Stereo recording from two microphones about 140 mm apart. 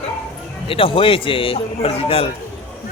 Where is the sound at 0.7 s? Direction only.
40° left (ahead or behind).